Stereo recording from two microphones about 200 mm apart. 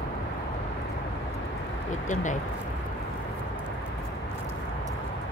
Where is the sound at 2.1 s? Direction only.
40° left (ahead or behind).